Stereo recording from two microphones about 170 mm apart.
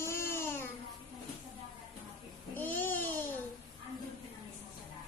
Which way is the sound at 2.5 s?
10° left (ahead or behind).